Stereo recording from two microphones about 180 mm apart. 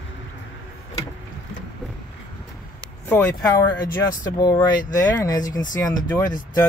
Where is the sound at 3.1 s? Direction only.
15° left (ahead or behind).